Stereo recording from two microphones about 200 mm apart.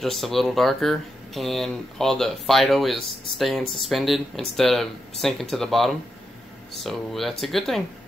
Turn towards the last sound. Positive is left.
turn(degrees=0)  # may be behind; listen again after turning